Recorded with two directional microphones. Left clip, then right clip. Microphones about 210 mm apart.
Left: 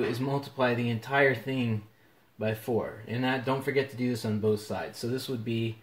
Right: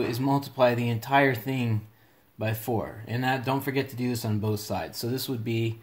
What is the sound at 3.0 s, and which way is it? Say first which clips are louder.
Speech: right 6 dB; 50° right (ahead or behind).